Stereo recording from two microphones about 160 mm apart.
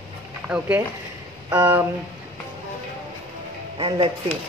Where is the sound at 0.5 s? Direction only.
10° right (ahead or behind).